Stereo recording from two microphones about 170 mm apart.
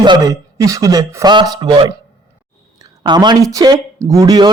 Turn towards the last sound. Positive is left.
turn(degrees=-20)  # may be behind; listen again after turning